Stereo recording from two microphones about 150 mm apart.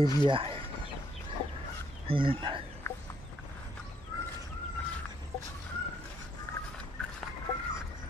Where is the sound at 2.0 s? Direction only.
35° right (ahead or behind).